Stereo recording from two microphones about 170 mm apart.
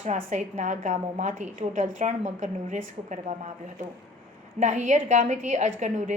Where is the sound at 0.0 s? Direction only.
45° right (ahead or behind).